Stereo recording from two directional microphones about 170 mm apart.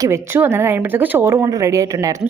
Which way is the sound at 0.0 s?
15° right (ahead or behind).